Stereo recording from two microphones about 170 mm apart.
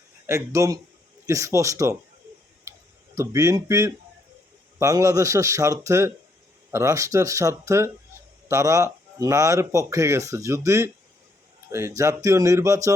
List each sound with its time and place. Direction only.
0.3 s a man's voice: 15° right (ahead or behind)
3.2 s a man's voice: 20° right (ahead or behind)